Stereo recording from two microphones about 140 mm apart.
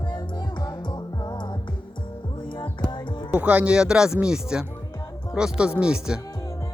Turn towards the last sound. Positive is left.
turn(degrees=-5)  # may be behind; listen again after turning